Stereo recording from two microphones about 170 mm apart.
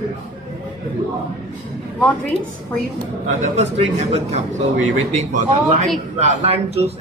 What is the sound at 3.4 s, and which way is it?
A man's voice, 40° right (ahead or behind).